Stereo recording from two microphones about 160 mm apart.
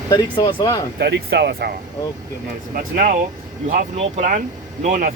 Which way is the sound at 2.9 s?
60° right (ahead or behind).